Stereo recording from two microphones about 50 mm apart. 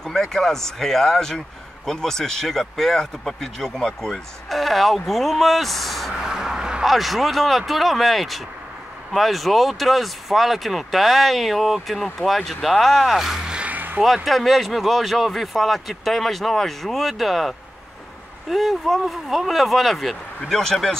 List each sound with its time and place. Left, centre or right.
0.0 s speech: centre
6.3 s a sound: centre
6.8 s speech: centre
13.7 s vehicle: right
14.0 s speech: centre